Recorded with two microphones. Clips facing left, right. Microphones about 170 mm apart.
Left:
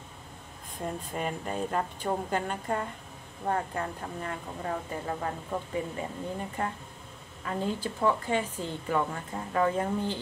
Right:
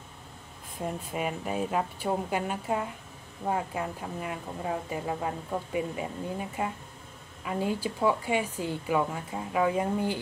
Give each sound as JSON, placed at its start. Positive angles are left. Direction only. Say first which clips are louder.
{"t": 0.7, "sound": "speech", "louder": "right 1 dB", "side_deg": -5}